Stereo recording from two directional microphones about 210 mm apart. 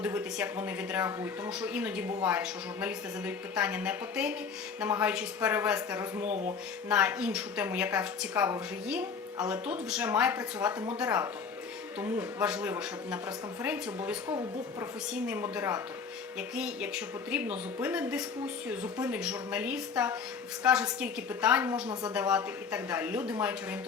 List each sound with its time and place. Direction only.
0.0 s a woman's voice: 5° right (ahead or behind)
6.2 s speech: 35° right (ahead or behind)
6.8 s a woman's voice: 5° right (ahead or behind)
14.3 s a woman's voice: 20° right (ahead or behind)
15.1 s a woman's voice: 5° right (ahead or behind)